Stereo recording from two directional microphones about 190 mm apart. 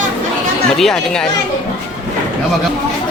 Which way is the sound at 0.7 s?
Centre (ahead or behind).